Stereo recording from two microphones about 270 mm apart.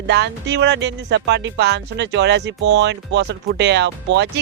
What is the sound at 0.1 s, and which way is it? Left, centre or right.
Speech, right.